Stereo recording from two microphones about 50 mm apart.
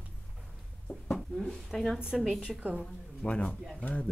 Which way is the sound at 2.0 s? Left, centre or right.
Centre.